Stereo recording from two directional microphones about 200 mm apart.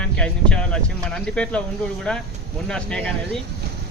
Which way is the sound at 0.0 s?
5° left (ahead or behind).